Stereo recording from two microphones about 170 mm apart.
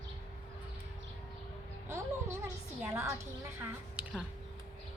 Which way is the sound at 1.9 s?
15° right (ahead or behind).